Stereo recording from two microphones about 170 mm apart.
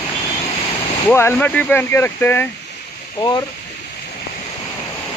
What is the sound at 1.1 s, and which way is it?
Speech, 15° left (ahead or behind).